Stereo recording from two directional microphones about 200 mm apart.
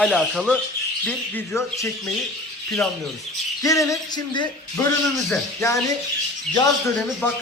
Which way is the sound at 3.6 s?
15° left (ahead or behind).